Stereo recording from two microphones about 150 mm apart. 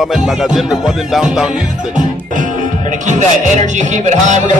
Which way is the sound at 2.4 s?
55° right (ahead or behind).